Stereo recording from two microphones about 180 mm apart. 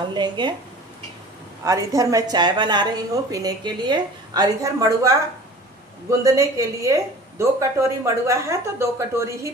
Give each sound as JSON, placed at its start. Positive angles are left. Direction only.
{"t": 0.0, "sound": "a woman's voice", "side_deg": -25}
{"t": 1.6, "sound": "a woman's voice", "side_deg": -20}